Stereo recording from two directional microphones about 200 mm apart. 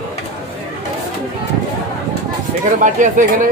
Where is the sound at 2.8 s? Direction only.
40° right (ahead or behind).